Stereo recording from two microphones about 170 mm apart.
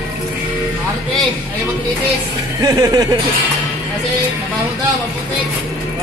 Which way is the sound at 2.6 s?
20° right (ahead or behind).